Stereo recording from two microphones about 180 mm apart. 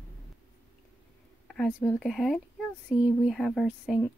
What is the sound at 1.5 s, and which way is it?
Speech, 5° left (ahead or behind).